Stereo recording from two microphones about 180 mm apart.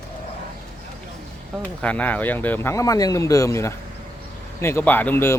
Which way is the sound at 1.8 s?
5° left (ahead or behind).